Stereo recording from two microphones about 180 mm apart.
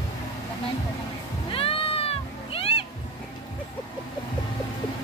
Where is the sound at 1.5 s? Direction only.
30° left (ahead or behind).